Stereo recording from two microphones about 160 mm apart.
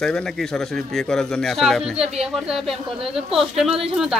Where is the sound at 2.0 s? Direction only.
40° right (ahead or behind).